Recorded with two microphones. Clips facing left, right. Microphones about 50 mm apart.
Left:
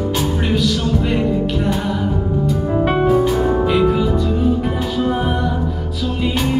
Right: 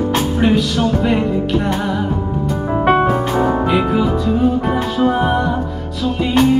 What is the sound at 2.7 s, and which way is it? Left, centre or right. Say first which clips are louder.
Music: right 5 dB; right.